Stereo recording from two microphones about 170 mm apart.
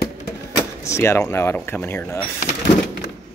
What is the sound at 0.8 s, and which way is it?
Speech, 15° left (ahead or behind).